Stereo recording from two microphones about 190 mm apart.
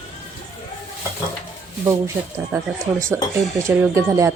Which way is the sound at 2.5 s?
15° right (ahead or behind).